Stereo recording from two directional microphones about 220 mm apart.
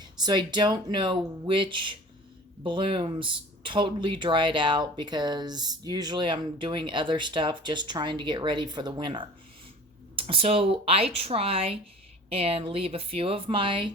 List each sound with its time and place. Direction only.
0.0 s speech: 20° right (ahead or behind)